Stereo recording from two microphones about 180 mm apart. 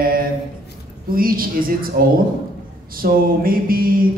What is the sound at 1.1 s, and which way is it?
A man's voice, 55° right (ahead or behind).